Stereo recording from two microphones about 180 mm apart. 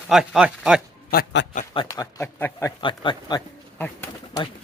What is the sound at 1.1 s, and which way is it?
Speech, 55° left (ahead or behind).